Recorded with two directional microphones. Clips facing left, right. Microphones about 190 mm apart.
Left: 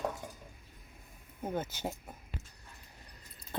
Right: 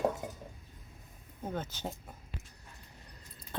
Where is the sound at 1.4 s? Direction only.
10° left (ahead or behind).